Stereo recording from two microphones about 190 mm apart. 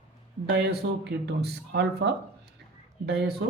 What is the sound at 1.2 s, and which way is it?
Speech, 60° right (ahead or behind).